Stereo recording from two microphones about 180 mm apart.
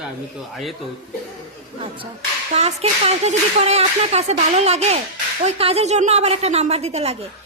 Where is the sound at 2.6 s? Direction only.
35° right (ahead or behind).